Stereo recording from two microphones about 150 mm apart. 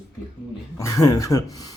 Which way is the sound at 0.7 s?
20° left (ahead or behind).